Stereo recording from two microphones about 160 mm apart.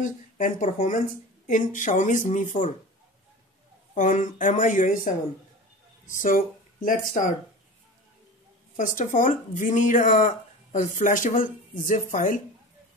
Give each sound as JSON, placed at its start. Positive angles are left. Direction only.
{"t": 0.0, "sound": "speech", "side_deg": 55}
{"t": 3.9, "sound": "speech", "side_deg": 55}
{"t": 8.7, "sound": "speech", "side_deg": 55}